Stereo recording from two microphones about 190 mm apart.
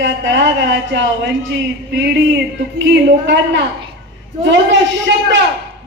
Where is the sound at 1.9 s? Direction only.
65° right (ahead or behind).